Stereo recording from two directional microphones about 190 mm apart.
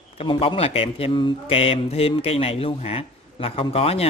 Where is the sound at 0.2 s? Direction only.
25° left (ahead or behind).